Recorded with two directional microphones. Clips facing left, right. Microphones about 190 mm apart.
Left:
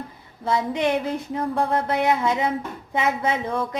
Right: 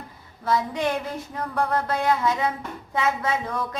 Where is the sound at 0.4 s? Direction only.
25° left (ahead or behind).